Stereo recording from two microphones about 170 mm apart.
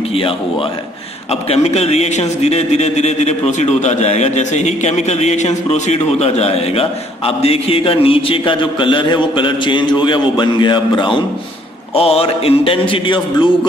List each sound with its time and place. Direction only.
1.3 s a man's voice: 35° left (ahead or behind)